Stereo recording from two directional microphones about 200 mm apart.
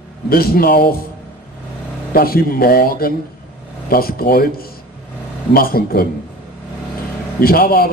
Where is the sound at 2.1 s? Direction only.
50° left (ahead or behind).